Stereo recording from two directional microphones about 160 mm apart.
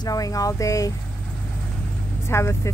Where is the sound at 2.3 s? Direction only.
15° left (ahead or behind).